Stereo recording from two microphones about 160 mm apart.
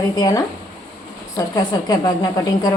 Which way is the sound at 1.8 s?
25° left (ahead or behind).